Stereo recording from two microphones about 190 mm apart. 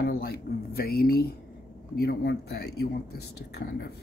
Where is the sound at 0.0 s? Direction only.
55° left (ahead or behind).